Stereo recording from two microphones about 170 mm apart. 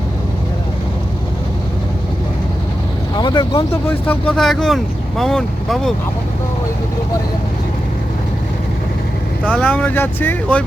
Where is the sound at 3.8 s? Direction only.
10° left (ahead or behind).